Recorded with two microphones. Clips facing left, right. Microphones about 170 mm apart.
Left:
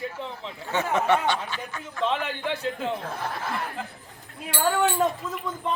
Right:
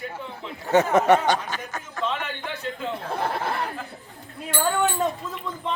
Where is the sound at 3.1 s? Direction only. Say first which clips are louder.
Right 5 dB; 65° right (ahead or behind).